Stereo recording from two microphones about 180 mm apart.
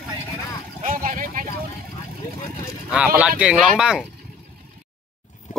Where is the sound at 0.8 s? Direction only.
50° right (ahead or behind).